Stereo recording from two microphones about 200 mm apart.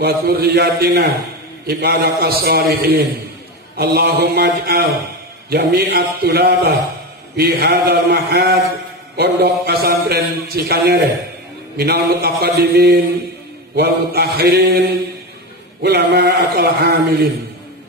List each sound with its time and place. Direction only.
0.0 s speech: 55° right (ahead or behind)
1.7 s a sound: 55° right (ahead or behind)
5.5 s speech: 55° right (ahead or behind)
9.1 s a sound: 55° right (ahead or behind)
13.7 s speech: 50° right (ahead or behind)
15.8 s speech: 60° right (ahead or behind)